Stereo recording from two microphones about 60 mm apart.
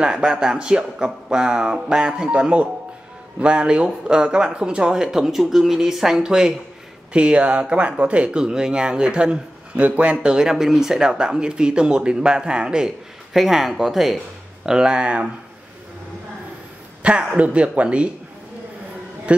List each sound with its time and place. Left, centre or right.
0.0 s speech: centre
10.2 s speech: centre
17.0 s speech: centre